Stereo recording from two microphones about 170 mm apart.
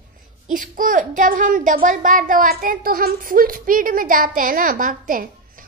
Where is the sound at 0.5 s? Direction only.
50° right (ahead or behind).